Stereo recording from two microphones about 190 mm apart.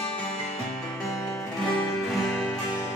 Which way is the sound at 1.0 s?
15° left (ahead or behind).